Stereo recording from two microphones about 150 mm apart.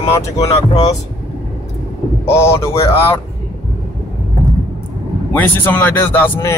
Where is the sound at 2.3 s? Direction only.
15° left (ahead or behind).